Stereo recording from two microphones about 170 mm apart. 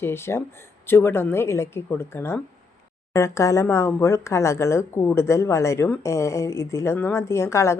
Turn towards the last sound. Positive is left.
turn(degrees=15)  # may be behind; listen again after turning